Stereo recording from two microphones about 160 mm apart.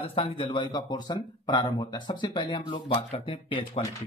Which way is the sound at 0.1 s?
35° left (ahead or behind).